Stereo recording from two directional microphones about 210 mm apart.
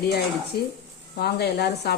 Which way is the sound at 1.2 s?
50° left (ahead or behind).